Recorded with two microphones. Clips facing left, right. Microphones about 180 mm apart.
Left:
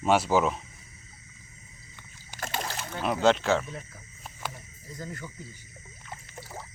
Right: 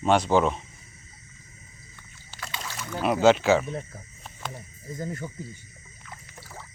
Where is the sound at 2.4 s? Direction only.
50° left (ahead or behind).